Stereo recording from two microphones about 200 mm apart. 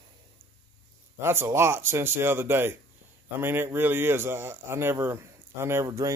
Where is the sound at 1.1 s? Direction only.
10° right (ahead or behind).